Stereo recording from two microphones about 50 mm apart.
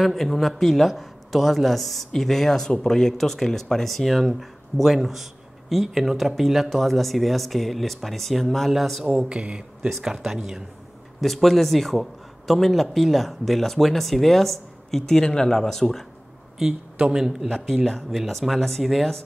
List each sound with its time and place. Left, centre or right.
0.0 s speech: centre
9.3 s speech: right
9.8 s speech: centre
16.5 s speech: centre